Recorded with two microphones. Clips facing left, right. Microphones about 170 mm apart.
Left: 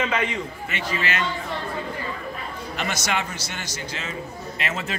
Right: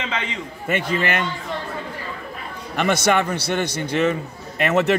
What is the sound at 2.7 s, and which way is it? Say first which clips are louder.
A man's voice: right 9 dB; 55° right (ahead or behind).